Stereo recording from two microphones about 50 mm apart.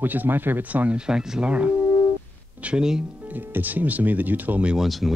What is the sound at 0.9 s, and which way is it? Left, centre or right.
Speech, centre.